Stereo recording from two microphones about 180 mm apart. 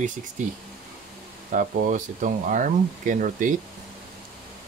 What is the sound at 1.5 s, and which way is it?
Speech, 45° right (ahead or behind).